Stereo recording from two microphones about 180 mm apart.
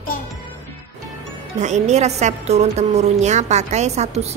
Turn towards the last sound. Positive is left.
turn(degrees=-40)  # may be behind; listen again after turning